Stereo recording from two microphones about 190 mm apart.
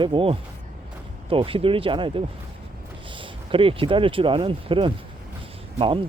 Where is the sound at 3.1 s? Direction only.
25° right (ahead or behind).